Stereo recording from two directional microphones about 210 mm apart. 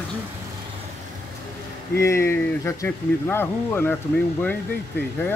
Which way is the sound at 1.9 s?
15° left (ahead or behind).